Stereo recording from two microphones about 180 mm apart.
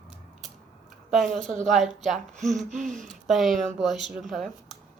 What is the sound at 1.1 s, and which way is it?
Speech, centre (ahead or behind).